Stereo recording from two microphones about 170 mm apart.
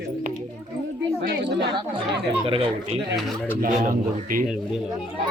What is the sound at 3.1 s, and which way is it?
Speech, centre (ahead or behind).